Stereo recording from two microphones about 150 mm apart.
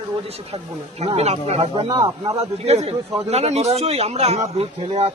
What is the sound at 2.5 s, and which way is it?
Speech, 45° right (ahead or behind).